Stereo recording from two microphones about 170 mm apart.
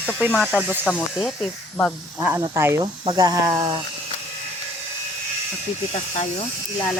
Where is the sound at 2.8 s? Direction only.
25° right (ahead or behind).